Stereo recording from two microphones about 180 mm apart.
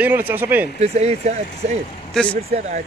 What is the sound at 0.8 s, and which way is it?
Speech, 35° right (ahead or behind).